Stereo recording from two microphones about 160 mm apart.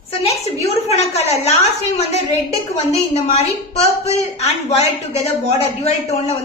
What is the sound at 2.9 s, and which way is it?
A woman's voice, 40° left (ahead or behind).